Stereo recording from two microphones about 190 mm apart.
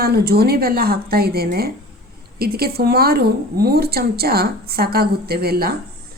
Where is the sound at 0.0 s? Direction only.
55° right (ahead or behind).